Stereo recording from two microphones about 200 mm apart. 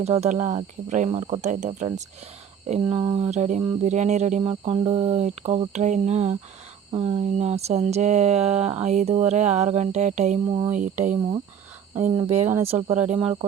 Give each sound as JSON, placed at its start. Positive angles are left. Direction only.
{"t": 0.0, "sound": "speech", "side_deg": -30}
{"t": 10.4, "sound": "speech", "side_deg": -20}
{"t": 10.7, "sound": "speech", "side_deg": -40}
{"t": 11.2, "sound": "speech", "side_deg": -20}
{"t": 13.1, "sound": "speech", "side_deg": -30}